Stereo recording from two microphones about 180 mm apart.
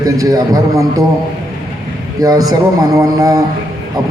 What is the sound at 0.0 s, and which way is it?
A man's voice, 20° right (ahead or behind).